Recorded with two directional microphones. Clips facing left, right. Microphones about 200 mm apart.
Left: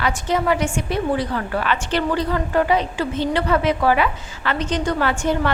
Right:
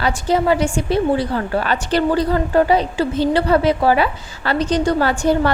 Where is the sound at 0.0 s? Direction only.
30° right (ahead or behind).